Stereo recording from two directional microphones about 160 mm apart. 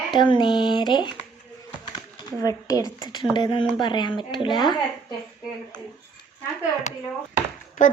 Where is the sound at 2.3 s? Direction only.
20° left (ahead or behind).